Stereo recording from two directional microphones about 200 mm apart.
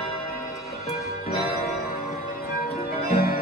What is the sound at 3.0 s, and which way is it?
Music, 50° left (ahead or behind).